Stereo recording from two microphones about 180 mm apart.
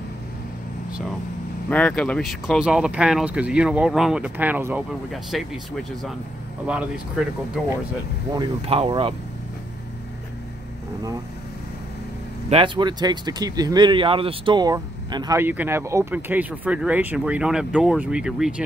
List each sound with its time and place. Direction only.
1.7 s speech: 5° left (ahead or behind)
6.7 s speech: 5° right (ahead or behind)
8.3 s speech: 25° right (ahead or behind)
12.4 s speech: 30° right (ahead or behind); by 18.5 s 5° right (ahead or behind)